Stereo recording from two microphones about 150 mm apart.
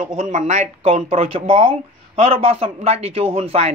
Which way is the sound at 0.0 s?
55° right (ahead or behind).